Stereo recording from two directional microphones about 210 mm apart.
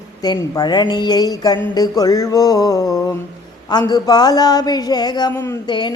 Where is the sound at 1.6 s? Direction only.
15° left (ahead or behind).